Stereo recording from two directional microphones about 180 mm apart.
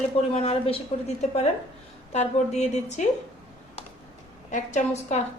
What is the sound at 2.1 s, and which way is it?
Speech, 40° left (ahead or behind).